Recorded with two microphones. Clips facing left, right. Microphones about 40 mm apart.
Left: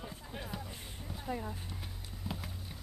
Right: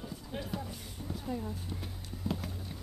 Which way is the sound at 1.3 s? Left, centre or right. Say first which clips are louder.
Even; centre.